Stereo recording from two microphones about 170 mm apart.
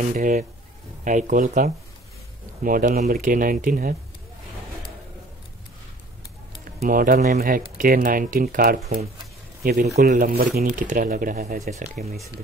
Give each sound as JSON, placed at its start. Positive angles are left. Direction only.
{"t": 0.1, "sound": "speech", "side_deg": -50}
{"t": 6.8, "sound": "speech", "side_deg": -55}